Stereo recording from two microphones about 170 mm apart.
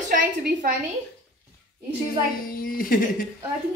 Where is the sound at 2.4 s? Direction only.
55° left (ahead or behind).